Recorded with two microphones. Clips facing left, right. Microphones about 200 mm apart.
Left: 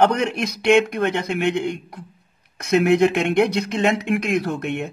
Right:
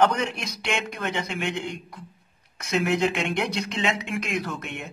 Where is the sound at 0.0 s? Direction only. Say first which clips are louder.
Left 4 dB; 60° left (ahead or behind).